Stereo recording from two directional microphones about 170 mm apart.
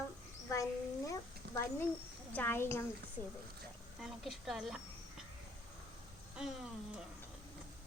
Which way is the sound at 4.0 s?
Centre (ahead or behind).